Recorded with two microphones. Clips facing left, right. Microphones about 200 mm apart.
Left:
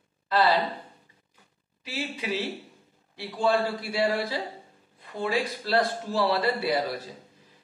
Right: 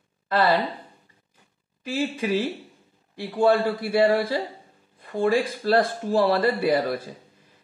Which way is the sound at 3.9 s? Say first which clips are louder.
Right 7 dB; 55° right (ahead or behind).